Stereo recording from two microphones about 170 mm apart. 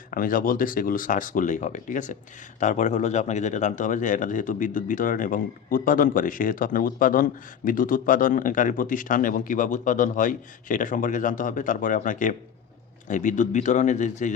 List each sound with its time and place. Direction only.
0.1 s speech: 55° left (ahead or behind)